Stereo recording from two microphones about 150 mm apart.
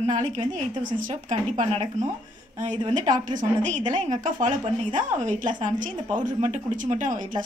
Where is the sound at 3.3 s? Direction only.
55° right (ahead or behind).